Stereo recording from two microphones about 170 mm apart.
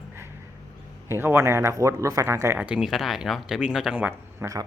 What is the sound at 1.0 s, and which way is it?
A man's voice, 15° right (ahead or behind).